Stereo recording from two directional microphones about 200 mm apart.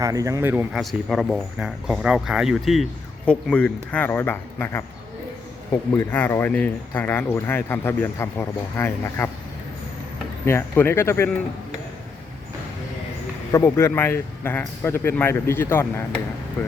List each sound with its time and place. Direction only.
0.0 s speech: 15° right (ahead or behind)
0.7 s speech: centre (ahead or behind)
6.0 s speech: 10° left (ahead or behind)
10.4 s speech: 10° left (ahead or behind)
13.5 s speech: 10° left (ahead or behind)